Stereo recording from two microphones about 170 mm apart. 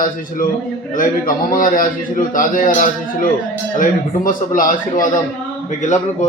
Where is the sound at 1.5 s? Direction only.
55° left (ahead or behind).